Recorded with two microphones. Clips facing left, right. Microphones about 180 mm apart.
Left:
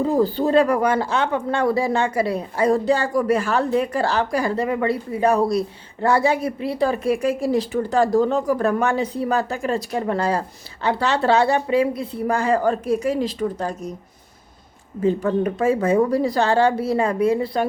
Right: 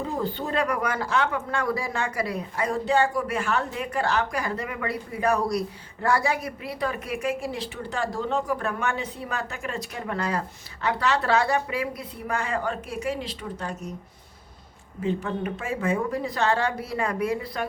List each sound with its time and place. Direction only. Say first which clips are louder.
0.0 s speech: left 10 dB; 35° left (ahead or behind)
15.0 s speech: left 8 dB; 40° left (ahead or behind)